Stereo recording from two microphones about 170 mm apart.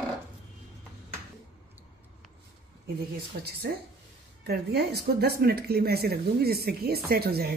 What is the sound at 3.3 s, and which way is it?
A woman's voice, 65° right (ahead or behind).